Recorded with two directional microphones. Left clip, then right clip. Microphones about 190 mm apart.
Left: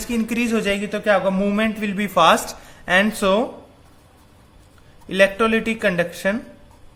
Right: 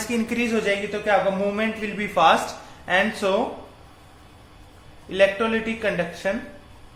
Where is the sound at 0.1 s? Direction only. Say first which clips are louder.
Left 3 dB; 35° left (ahead or behind); by 3.3 s 55° left (ahead or behind).